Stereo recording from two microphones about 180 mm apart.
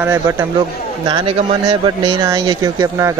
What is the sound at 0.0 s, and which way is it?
Speech, 15° right (ahead or behind).